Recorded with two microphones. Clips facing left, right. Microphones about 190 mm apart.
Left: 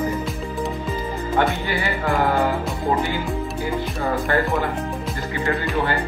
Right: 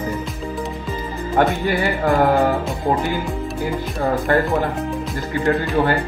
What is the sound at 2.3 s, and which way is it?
Speech, 40° right (ahead or behind).